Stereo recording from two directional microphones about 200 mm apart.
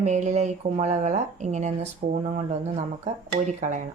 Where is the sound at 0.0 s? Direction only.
35° right (ahead or behind).